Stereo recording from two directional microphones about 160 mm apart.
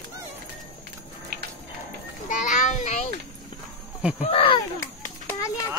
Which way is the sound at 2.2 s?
50° left (ahead or behind).